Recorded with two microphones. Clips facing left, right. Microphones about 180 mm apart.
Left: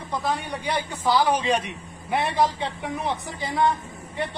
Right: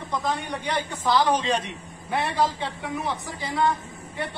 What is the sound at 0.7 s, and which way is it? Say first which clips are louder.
A man's voice: left 1 dB; 10° left (ahead or behind).